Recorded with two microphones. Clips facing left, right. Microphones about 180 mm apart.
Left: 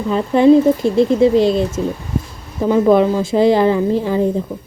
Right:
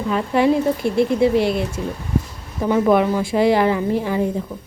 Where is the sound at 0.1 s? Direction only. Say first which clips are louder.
Left 7 dB; 25° left (ahead or behind).